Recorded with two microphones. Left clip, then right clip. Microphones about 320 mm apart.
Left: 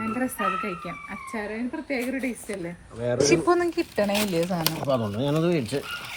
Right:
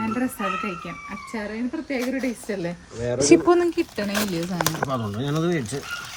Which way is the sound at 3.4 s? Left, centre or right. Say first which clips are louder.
Right 3 dB; centre.